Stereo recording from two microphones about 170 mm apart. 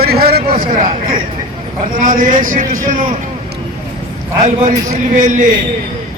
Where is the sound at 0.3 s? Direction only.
65° right (ahead or behind).